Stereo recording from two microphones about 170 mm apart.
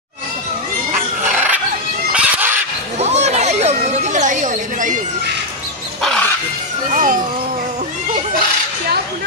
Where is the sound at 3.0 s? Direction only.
40° right (ahead or behind).